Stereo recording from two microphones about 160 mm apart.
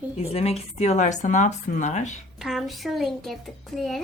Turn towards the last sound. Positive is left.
turn(degrees=0)  # may be behind; listen again after turning